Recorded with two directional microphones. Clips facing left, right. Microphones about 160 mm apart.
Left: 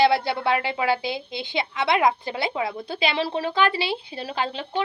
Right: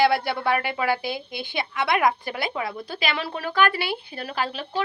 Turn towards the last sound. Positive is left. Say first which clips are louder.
# left 1 dB
turn(degrees=25)  # may be behind; listen again after turning